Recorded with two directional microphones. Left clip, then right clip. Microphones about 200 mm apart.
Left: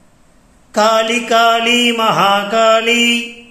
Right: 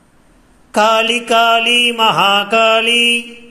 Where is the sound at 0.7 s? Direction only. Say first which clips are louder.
Even; 25° right (ahead or behind).